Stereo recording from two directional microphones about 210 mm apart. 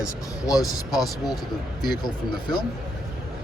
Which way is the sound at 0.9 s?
Centre (ahead or behind).